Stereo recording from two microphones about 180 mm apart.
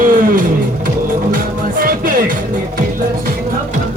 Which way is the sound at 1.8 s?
50° right (ahead or behind).